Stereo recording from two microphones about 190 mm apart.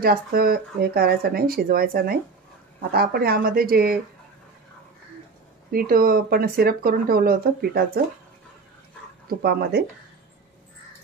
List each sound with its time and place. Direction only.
0.0 s speech: 50° right (ahead or behind)
5.7 s speech: 50° right (ahead or behind)
9.3 s speech: 55° right (ahead or behind)